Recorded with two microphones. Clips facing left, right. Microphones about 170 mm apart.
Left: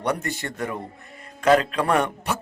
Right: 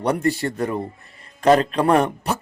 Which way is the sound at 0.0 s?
30° right (ahead or behind).